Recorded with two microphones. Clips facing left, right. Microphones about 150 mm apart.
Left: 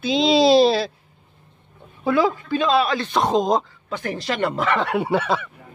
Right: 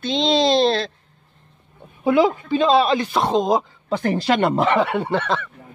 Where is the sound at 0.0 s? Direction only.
5° left (ahead or behind).